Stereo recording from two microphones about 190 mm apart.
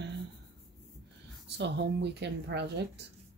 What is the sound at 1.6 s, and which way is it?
Speech, 65° right (ahead or behind).